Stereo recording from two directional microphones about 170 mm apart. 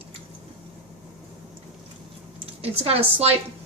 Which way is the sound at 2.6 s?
35° right (ahead or behind).